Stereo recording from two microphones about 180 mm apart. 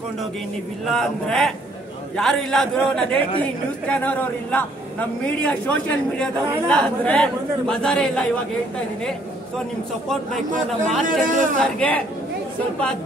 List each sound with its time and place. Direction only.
0.8 s a man's voice: centre (ahead or behind)
10.5 s speech: 45° right (ahead or behind)
11.6 s speech: 5° left (ahead or behind)